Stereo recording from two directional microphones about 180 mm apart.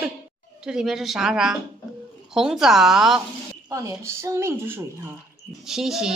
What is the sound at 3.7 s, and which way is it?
A woman's voice, 15° right (ahead or behind).